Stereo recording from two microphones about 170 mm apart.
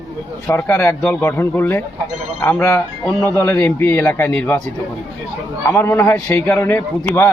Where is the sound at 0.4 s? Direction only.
15° left (ahead or behind).